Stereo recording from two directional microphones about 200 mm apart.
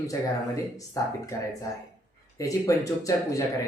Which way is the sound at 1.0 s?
15° left (ahead or behind).